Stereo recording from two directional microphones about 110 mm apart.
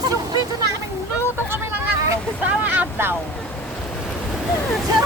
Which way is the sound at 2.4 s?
15° right (ahead or behind).